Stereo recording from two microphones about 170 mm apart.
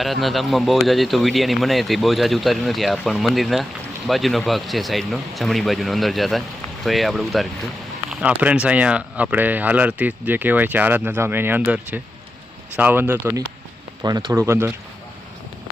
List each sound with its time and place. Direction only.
0.0 s speech: centre (ahead or behind)
14.0 s speech: 20° right (ahead or behind)